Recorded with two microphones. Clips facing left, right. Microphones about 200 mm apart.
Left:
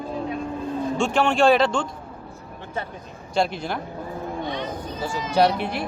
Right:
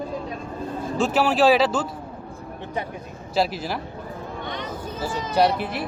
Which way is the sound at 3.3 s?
5° right (ahead or behind).